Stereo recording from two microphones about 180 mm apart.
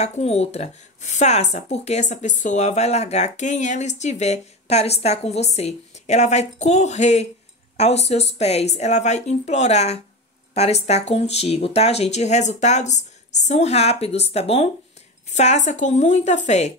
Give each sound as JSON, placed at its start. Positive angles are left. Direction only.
{"t": 0.0, "sound": "speech", "side_deg": 35}